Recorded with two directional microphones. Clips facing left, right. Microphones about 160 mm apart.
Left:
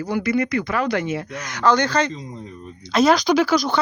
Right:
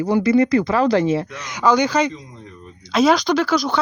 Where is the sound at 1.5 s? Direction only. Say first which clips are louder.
Right 2 dB; 10° right (ahead or behind).